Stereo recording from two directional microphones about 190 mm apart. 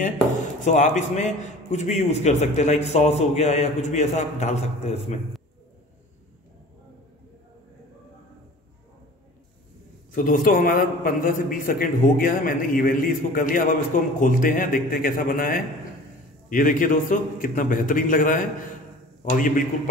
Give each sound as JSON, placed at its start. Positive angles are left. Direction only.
{"t": 0.7, "sound": "a man's voice", "side_deg": 40}
{"t": 10.1, "sound": "a man's voice", "side_deg": 45}